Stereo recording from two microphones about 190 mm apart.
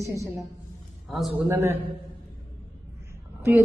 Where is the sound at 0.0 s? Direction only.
15° right (ahead or behind).